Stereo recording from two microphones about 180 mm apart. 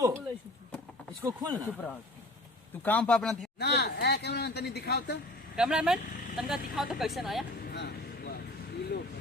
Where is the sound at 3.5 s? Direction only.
65° left (ahead or behind).